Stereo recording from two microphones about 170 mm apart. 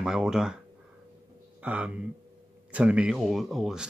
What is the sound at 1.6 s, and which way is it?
Speech, 10° right (ahead or behind).